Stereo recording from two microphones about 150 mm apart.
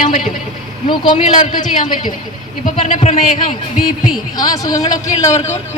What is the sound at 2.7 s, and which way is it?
Speech, 45° left (ahead or behind).